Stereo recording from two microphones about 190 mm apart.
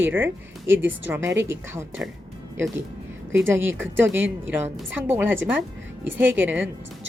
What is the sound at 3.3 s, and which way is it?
A woman's voice, 10° right (ahead or behind).